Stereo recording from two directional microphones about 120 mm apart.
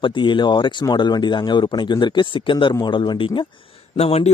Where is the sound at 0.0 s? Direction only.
40° left (ahead or behind).